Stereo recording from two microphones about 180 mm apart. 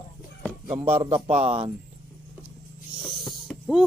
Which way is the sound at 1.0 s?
35° right (ahead or behind).